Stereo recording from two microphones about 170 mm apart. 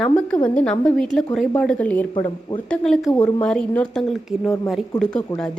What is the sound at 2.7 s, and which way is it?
Speech, centre (ahead or behind).